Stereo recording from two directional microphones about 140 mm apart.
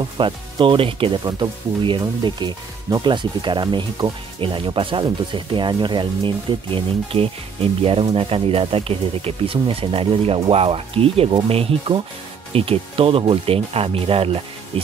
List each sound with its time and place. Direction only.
0.0 s speech: 35° right (ahead or behind)